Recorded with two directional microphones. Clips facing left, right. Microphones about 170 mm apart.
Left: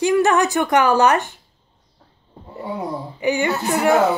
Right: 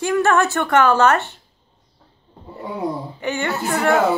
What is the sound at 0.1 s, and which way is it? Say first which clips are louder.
A woman's voice: right 3 dB; 15° left (ahead or behind).